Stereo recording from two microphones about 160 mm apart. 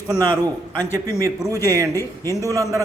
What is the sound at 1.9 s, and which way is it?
Speech, 20° left (ahead or behind).